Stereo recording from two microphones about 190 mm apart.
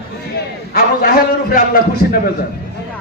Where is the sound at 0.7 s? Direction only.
50° left (ahead or behind).